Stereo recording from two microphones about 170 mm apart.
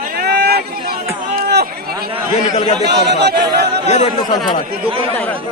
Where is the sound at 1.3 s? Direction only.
70° right (ahead or behind).